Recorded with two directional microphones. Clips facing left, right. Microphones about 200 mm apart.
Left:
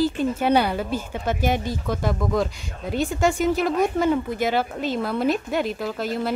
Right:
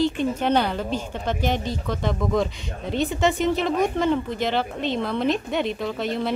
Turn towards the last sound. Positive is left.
turn(degrees=5)  # may be behind; listen again after turning